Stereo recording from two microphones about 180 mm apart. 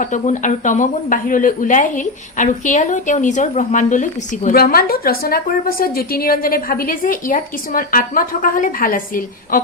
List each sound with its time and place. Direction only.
0.0 s speech: 45° left (ahead or behind)